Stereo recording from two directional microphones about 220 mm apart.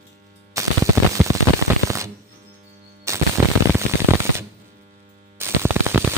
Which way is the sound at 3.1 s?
15° right (ahead or behind).